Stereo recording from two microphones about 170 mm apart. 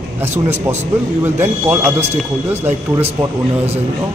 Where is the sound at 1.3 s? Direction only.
15° right (ahead or behind).